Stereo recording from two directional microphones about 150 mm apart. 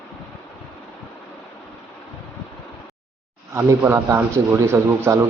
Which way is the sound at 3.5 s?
15° right (ahead or behind).